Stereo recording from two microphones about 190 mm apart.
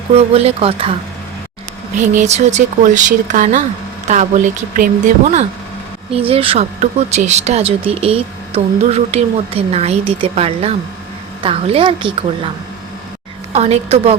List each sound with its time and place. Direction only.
0.1 s speech: 30° right (ahead or behind)
2.1 s a woman's voice: 35° right (ahead or behind)
13.5 s speech: 35° right (ahead or behind)